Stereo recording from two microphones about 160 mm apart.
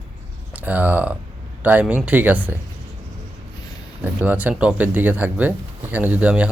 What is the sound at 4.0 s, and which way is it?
Speech, 10° right (ahead or behind).